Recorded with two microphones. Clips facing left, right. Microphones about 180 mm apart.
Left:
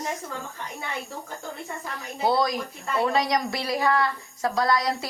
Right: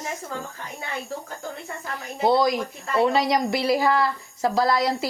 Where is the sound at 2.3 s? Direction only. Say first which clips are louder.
Right 4 dB; 25° right (ahead or behind).